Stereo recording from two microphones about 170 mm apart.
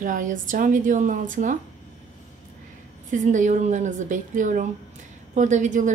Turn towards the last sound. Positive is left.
turn(degrees=-45)  # may be behind; listen again after turning